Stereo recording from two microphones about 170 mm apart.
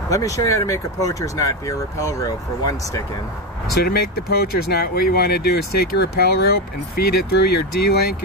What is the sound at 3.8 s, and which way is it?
Speech, 65° left (ahead or behind).